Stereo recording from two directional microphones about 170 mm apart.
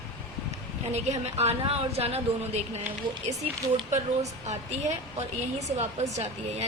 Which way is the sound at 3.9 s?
40° right (ahead or behind).